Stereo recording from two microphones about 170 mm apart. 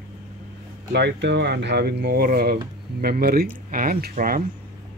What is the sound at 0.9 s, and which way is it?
Speech, 85° right.